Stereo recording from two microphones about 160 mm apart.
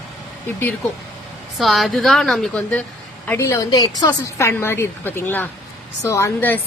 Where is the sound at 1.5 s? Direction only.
Centre (ahead or behind).